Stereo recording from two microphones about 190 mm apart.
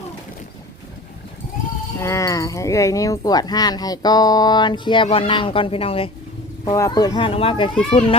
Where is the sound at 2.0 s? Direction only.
15° left (ahead or behind).